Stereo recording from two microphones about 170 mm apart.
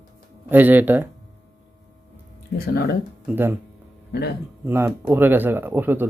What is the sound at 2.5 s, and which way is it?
Speech, 60° left (ahead or behind).